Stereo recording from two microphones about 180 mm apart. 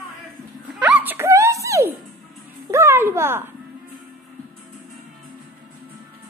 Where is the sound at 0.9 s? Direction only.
10° right (ahead or behind).